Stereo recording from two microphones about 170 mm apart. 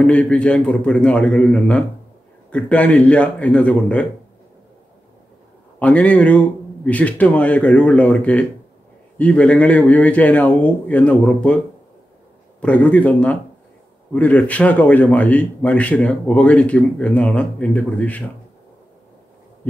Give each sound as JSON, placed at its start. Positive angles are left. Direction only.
{"t": 0.0, "sound": "speech", "side_deg": 5}
{"t": 5.8, "sound": "speech", "side_deg": 10}